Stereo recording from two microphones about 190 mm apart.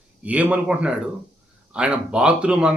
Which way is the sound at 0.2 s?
5° right (ahead or behind).